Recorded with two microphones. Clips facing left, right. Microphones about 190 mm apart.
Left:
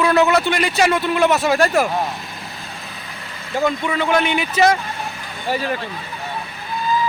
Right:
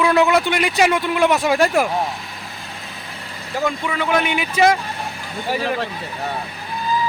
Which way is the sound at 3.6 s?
Centre (ahead or behind).